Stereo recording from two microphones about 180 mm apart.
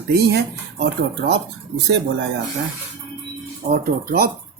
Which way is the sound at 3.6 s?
55° right (ahead or behind).